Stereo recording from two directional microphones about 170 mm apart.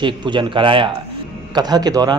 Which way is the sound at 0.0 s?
30° right (ahead or behind).